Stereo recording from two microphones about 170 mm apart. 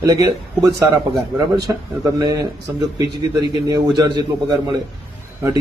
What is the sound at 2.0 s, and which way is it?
A man's voice, 20° right (ahead or behind).